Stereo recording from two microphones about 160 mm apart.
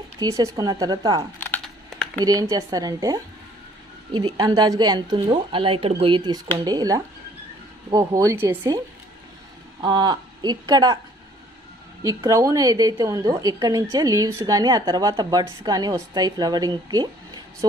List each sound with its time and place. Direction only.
0.2 s a woman's voice: 20° right (ahead or behind)
1.4 s typing: 10° left (ahead or behind)
2.2 s a woman's voice: 25° right (ahead or behind)
12.0 s a woman's voice: 20° right (ahead or behind)